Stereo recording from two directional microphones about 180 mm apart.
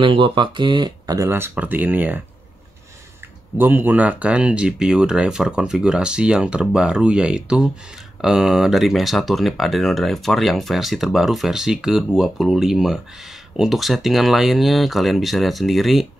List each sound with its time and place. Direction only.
0.0 s speech: 30° right (ahead or behind); by 2.2 s 10° right (ahead or behind)
3.5 s speech: 10° right (ahead or behind)